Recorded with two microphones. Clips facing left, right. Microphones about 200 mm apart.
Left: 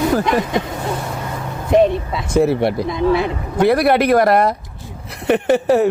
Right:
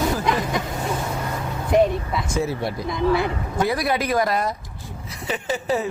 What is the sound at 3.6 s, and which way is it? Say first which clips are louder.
Speech: left 9 dB; 65° left (ahead or behind).